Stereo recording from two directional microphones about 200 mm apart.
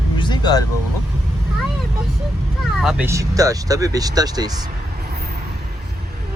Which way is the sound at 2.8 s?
5° right (ahead or behind).